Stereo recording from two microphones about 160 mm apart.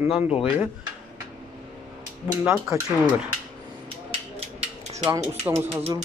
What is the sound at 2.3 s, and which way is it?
Speech, 20° right (ahead or behind).